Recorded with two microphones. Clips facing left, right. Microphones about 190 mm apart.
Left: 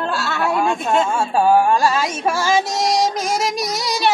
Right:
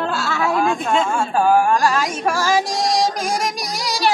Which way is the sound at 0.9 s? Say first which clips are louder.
Left 1 dB; 5° left (ahead or behind).